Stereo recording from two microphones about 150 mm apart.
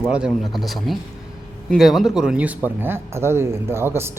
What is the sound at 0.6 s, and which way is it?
A man's voice, centre (ahead or behind).